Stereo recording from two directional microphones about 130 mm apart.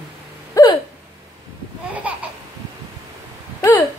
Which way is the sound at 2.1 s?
10° right (ahead or behind).